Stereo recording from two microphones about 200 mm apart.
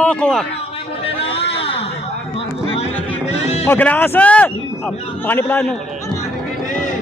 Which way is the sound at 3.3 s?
30° left (ahead or behind).